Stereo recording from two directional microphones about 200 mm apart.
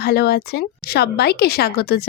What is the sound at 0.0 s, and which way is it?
A woman's voice, 55° left (ahead or behind).